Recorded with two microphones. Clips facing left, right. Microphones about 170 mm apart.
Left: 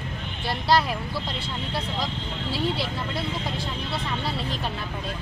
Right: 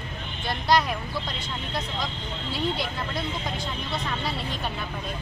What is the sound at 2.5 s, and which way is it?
Speech, 5° left (ahead or behind).